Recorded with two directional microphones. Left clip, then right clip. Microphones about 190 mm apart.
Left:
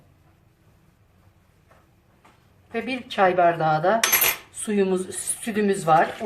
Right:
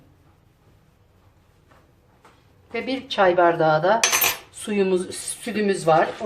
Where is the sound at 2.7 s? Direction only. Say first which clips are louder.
Right 2 dB; 15° right (ahead or behind).